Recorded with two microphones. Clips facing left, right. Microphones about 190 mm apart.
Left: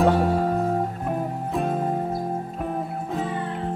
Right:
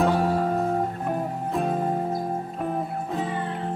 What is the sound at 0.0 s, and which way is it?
Music, centre (ahead or behind).